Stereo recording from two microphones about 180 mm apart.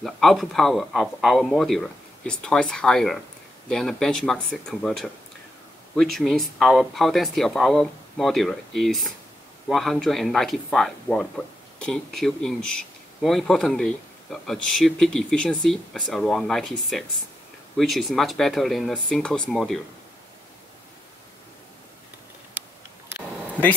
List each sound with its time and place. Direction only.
0.0 s speech: centre (ahead or behind)